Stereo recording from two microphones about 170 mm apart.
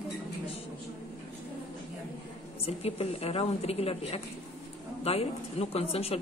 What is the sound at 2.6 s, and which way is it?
A woman's voice, 35° left (ahead or behind).